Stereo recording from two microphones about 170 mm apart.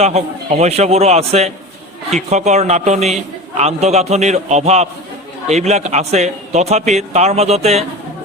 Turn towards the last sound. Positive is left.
turn(degrees=-40)  # may be behind; listen again after turning